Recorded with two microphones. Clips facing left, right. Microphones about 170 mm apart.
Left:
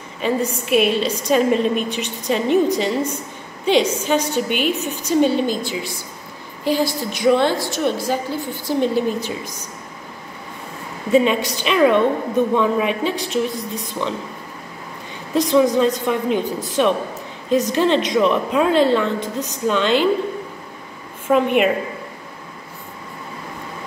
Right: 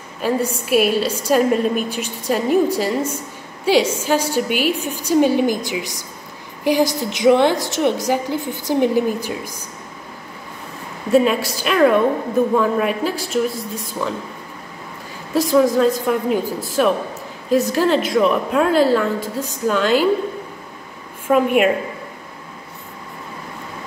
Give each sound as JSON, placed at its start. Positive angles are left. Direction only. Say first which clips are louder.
{"t": 0.7, "sound": "a woman's voice", "louder": "even", "side_deg": -5}
{"t": 11.1, "sound": "a woman's voice", "louder": "right 1 dB", "side_deg": -5}
{"t": 15.3, "sound": "a woman's voice", "louder": "even", "side_deg": -5}
{"t": 21.3, "sound": "a woman's voice", "louder": "right 1 dB", "side_deg": -5}